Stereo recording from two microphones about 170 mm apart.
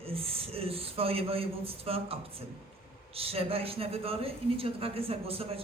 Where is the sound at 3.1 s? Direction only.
35° right (ahead or behind).